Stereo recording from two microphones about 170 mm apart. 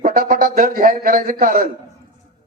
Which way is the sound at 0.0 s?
55° right (ahead or behind).